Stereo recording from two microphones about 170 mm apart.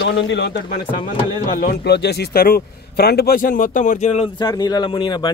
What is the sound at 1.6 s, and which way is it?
Speech, 65° left (ahead or behind).